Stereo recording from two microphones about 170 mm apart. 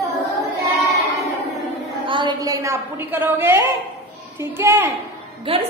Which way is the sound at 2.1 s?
25° right (ahead or behind).